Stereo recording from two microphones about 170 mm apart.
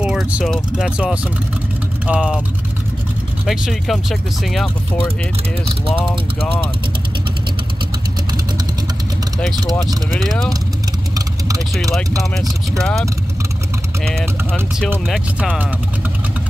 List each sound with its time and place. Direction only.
0.0 s speech: 5° right (ahead or behind)
3.4 s speech: centre (ahead or behind)
10.1 s speech: 5° left (ahead or behind)
11.1 s vehicle: 20° right (ahead or behind)
14.0 s speech: centre (ahead or behind)